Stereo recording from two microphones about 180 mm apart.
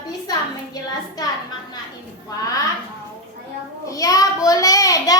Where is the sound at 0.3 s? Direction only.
20° left (ahead or behind).